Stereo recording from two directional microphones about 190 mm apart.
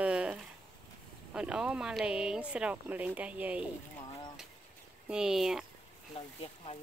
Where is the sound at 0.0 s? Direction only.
5° right (ahead or behind).